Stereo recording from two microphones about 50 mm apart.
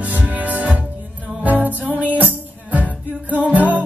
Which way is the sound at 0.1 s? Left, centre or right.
Right.